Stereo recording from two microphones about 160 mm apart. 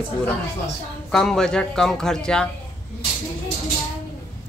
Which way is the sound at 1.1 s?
5° left (ahead or behind).